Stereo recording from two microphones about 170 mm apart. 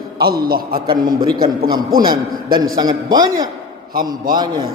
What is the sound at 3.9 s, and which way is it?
Speech, 55° right (ahead or behind).